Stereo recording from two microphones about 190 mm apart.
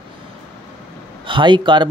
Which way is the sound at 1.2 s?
25° right (ahead or behind).